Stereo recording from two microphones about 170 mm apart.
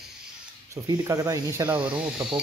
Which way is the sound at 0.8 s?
20° right (ahead or behind).